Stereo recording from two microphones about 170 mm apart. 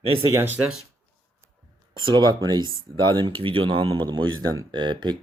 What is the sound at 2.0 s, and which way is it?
Speech, 25° right (ahead or behind).